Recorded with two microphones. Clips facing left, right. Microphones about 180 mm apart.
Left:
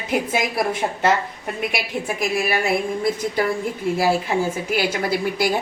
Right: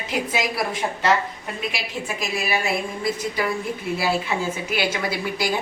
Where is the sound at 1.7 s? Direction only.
55° left (ahead or behind).